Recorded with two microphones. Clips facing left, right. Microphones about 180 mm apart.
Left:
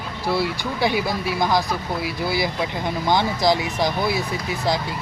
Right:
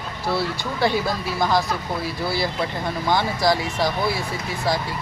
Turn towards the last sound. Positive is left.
turn(degrees=20)  # may be behind; listen again after turning